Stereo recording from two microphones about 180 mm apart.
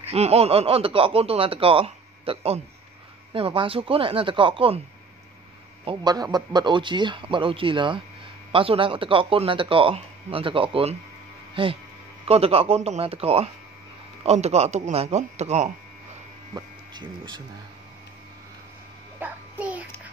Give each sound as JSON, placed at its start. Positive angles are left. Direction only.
{"t": 0.1, "sound": "speech", "side_deg": -35}
{"t": 5.9, "sound": "speech", "side_deg": -20}
{"t": 16.5, "sound": "speech", "side_deg": -25}
{"t": 19.1, "sound": "a sound", "side_deg": -10}